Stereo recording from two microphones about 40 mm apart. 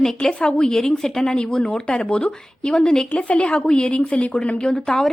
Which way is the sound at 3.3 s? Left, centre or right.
Left.